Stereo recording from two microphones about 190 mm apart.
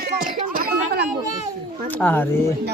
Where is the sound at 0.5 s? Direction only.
50° right (ahead or behind).